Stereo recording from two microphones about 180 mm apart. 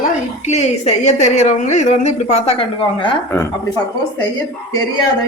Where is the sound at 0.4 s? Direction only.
40° left (ahead or behind).